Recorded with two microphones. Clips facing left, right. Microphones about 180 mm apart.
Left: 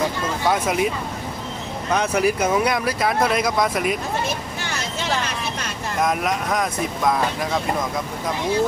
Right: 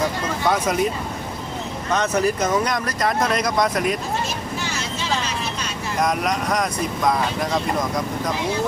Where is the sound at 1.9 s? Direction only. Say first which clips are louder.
Even; 10° left (ahead or behind).